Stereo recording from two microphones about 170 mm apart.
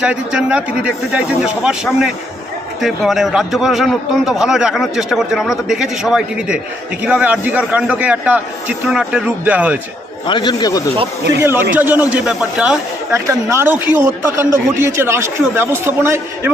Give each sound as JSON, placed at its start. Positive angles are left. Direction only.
{"t": 0.0, "sound": "a man's voice", "side_deg": -5}
{"t": 10.2, "sound": "a man's voice", "side_deg": 25}
{"t": 11.7, "sound": "a man's voice", "side_deg": -10}
{"t": 13.1, "sound": "a man's voice", "side_deg": -15}